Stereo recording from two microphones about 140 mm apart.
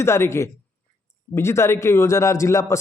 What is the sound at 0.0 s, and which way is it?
A man's voice, 20° left (ahead or behind).